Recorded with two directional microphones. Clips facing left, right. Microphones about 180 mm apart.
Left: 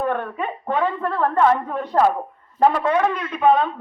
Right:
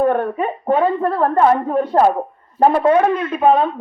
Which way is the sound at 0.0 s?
45° right (ahead or behind).